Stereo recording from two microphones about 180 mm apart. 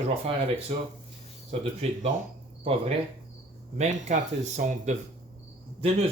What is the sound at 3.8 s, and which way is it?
Speech, 40° right (ahead or behind).